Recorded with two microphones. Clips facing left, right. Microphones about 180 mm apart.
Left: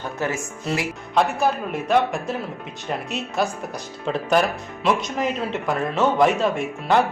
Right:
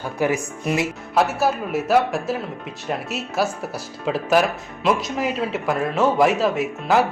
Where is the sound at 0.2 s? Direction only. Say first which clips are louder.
Right 6 dB; 15° right (ahead or behind).